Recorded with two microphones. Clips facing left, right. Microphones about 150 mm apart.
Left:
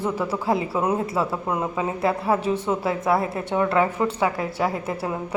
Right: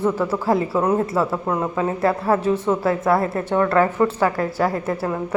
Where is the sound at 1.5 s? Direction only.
15° left (ahead or behind).